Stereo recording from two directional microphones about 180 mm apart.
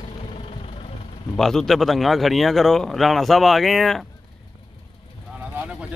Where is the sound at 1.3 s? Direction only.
Centre (ahead or behind).